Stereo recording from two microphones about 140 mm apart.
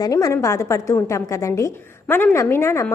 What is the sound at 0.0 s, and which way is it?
A woman's voice, 25° left (ahead or behind).